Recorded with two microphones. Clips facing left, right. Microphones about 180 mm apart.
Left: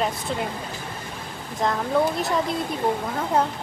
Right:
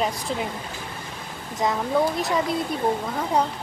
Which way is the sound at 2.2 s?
Centre (ahead or behind).